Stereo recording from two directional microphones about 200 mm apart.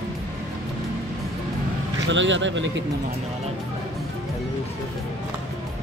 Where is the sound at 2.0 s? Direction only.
65° right (ahead or behind).